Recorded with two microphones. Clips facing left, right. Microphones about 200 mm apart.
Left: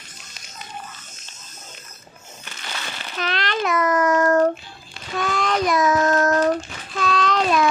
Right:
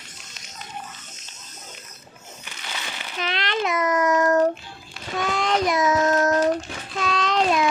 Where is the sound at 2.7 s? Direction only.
15° right (ahead or behind).